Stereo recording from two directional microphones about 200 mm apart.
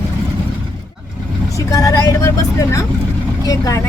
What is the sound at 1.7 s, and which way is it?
Speech, 15° left (ahead or behind).